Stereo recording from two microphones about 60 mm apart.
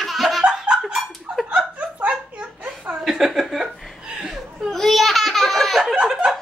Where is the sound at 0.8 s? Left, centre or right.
Centre.